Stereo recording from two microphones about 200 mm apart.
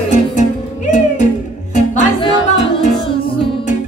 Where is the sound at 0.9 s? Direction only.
40° left (ahead or behind).